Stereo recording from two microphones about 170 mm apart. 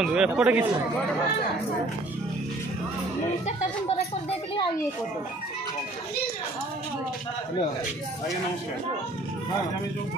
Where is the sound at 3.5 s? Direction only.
40° left (ahead or behind).